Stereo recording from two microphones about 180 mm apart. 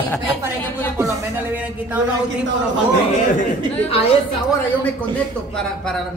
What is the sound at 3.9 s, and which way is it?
Speech, 35° left (ahead or behind).